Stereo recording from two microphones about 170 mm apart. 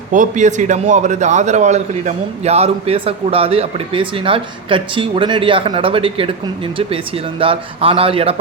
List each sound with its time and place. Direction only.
0.1 s a man's voice: 45° right (ahead or behind)